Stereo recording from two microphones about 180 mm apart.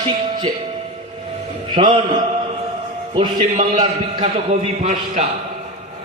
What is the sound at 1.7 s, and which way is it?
A man's voice, 25° right (ahead or behind).